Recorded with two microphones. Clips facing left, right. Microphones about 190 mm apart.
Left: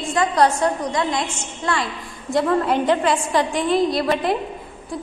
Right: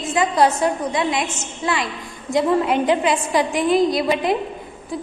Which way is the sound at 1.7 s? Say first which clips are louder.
Even; centre (ahead or behind).